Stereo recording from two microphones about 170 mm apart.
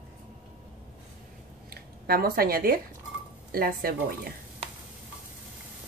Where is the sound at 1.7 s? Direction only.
65° right (ahead or behind).